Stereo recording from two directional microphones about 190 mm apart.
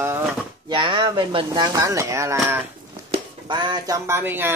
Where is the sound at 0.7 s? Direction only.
25° right (ahead or behind).